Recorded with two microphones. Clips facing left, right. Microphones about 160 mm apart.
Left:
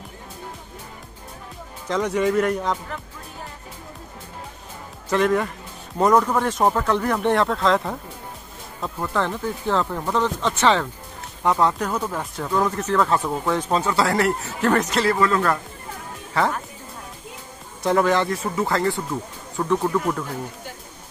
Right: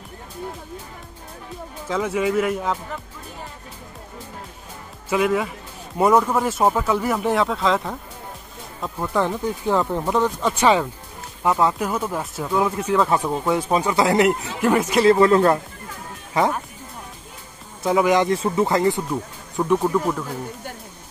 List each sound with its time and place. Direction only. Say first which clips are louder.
1.9 s speech: left 1 dB; 5° right (ahead or behind)
5.1 s speech: even; 5° right (ahead or behind)
8.8 s speech: right 2 dB; 10° right (ahead or behind)
15.0 s speech: right 8 dB; 30° right (ahead or behind)
17.8 s speech: right 1 dB; 10° right (ahead or behind)
18.3 s speech: right 4 dB; 25° right (ahead or behind); by 20.0 s 10° right (ahead or behind)